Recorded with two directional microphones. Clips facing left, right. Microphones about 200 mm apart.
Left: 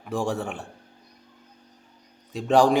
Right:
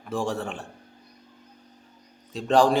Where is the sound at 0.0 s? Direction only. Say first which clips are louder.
Left 1 dB; 15° left (ahead or behind).